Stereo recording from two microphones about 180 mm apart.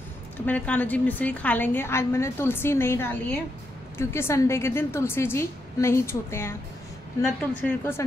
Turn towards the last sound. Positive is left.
turn(degrees=10)  # may be behind; listen again after turning